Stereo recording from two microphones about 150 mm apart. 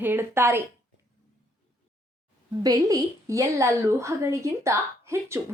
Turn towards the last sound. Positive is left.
turn(degrees=-20)  # may be behind; listen again after turning